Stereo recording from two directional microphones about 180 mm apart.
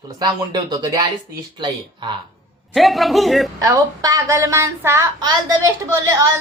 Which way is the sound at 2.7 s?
Centre (ahead or behind).